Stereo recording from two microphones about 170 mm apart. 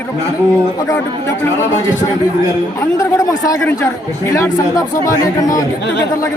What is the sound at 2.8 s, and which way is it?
Speech, 15° left (ahead or behind).